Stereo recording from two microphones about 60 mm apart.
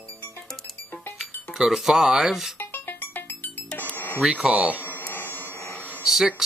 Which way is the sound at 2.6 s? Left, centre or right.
Left.